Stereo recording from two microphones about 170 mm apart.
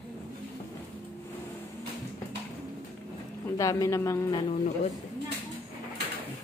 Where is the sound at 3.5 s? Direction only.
20° left (ahead or behind).